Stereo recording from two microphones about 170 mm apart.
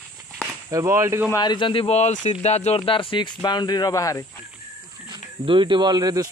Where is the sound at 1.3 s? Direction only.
25° left (ahead or behind).